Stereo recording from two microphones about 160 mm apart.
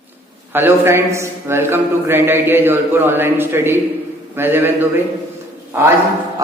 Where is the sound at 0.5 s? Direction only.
15° right (ahead or behind).